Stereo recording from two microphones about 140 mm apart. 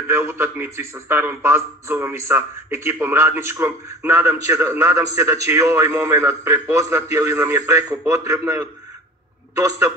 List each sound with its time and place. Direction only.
0.1 s a man's voice: 20° right (ahead or behind)